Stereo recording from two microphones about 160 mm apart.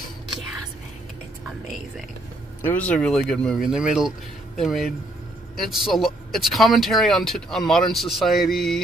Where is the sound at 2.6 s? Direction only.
10° left (ahead or behind).